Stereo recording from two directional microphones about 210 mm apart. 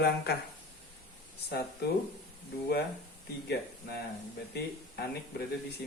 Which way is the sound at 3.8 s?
45° left (ahead or behind).